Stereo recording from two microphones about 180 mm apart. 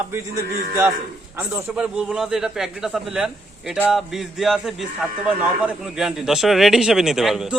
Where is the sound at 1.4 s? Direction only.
10° right (ahead or behind).